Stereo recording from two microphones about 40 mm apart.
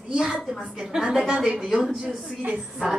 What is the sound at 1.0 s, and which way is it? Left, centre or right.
Speech, centre.